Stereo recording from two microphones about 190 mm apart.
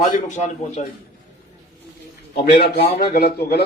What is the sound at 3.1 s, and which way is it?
Speech, 55° left (ahead or behind).